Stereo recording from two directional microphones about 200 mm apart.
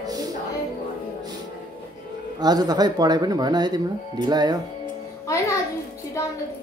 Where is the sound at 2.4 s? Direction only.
20° right (ahead or behind).